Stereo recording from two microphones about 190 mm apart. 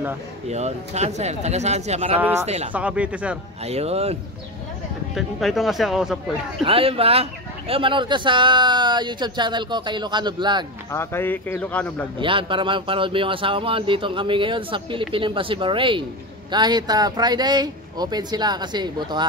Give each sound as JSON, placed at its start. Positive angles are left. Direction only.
{"t": 0.5, "sound": "speech", "side_deg": -35}
{"t": 2.1, "sound": "speech", "side_deg": -10}
{"t": 2.4, "sound": "speech", "side_deg": -35}
{"t": 2.7, "sound": "speech", "side_deg": -5}
{"t": 3.6, "sound": "speech", "side_deg": -35}
{"t": 5.1, "sound": "speech", "side_deg": 0}
{"t": 6.6, "sound": "speech", "side_deg": -30}
{"t": 10.9, "sound": "speech", "side_deg": 10}
{"t": 12.2, "sound": "speech", "side_deg": -25}